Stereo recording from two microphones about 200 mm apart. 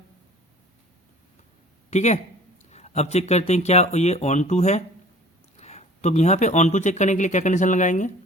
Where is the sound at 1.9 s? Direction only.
35° left (ahead or behind).